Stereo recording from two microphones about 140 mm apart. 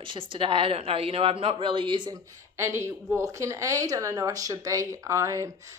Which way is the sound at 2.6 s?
20° right (ahead or behind).